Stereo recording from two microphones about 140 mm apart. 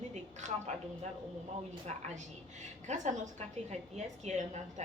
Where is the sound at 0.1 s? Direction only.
55° right (ahead or behind).